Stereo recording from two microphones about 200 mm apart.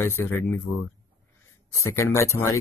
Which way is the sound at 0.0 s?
10° left (ahead or behind).